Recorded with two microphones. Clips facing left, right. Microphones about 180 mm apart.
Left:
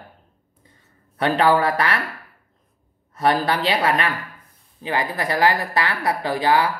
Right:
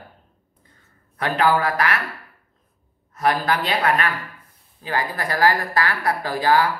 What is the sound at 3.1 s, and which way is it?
Speech, 30° left (ahead or behind).